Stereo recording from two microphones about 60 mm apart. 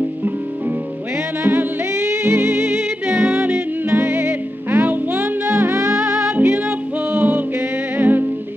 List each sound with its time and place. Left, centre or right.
1.4 s music: right
2.0 s music: right
3.9 s music: right
5.5 s music: right
6.3 s music: right